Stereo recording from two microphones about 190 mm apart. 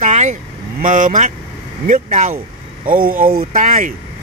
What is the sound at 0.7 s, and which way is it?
Speech, 45° right (ahead or behind).